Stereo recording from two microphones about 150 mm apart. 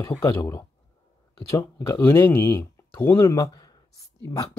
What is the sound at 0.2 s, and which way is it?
Speech, 20° left (ahead or behind).